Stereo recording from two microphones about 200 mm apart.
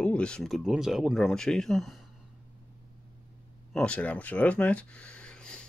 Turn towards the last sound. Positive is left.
turn(degrees=5)  # may be behind; listen again after turning